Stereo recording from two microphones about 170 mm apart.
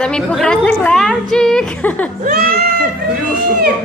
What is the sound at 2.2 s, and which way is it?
Speech, 60° right (ahead or behind).